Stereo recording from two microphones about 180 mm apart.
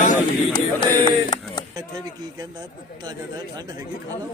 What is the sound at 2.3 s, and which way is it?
Speech, 25° right (ahead or behind).